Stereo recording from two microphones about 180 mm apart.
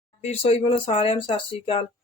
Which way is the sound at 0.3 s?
35° left (ahead or behind).